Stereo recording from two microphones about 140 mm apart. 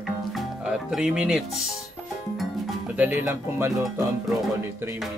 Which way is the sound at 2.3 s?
Centre (ahead or behind).